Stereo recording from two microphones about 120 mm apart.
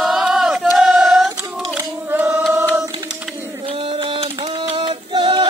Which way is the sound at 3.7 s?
50° right (ahead or behind).